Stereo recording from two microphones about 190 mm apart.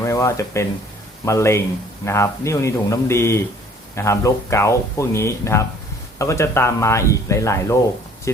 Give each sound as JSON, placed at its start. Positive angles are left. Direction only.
{"t": 0.0, "sound": "speech", "side_deg": 15}